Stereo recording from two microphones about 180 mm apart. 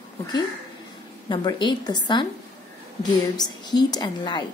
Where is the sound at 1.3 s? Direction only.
25° left (ahead or behind).